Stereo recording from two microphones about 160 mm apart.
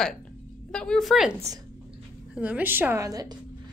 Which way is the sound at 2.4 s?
10° right (ahead or behind).